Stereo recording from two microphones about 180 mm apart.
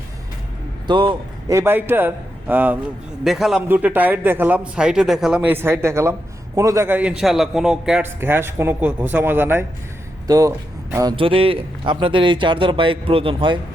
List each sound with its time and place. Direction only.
0.9 s speech: 25° right (ahead or behind)
1.5 s a man's voice: 10° right (ahead or behind)
11.2 s a man's voice: 30° right (ahead or behind)